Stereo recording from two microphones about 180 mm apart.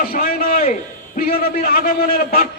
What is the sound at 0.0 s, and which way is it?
A man's voice, 55° left (ahead or behind).